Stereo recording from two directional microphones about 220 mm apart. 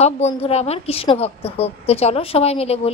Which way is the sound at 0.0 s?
30° left (ahead or behind).